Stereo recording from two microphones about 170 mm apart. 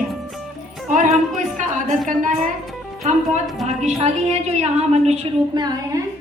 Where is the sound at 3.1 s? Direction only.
45° right (ahead or behind).